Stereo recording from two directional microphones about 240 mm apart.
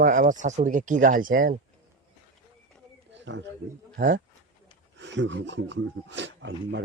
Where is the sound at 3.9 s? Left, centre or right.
Right.